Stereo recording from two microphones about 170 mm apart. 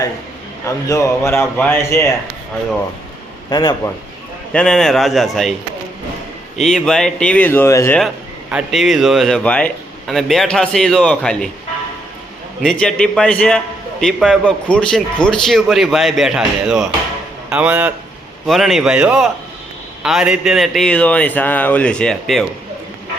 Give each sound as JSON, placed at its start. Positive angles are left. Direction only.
{"t": 0.9, "sound": "speech", "side_deg": 15}
{"t": 3.5, "sound": "a man's voice", "side_deg": 25}
{"t": 4.5, "sound": "a man's voice", "side_deg": 5}
{"t": 6.6, "sound": "speech", "side_deg": 5}
{"t": 8.4, "sound": "a man's voice", "side_deg": -5}
{"t": 12.6, "sound": "a man's voice", "side_deg": 5}